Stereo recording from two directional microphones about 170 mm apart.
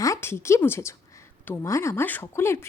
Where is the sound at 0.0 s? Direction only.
15° left (ahead or behind).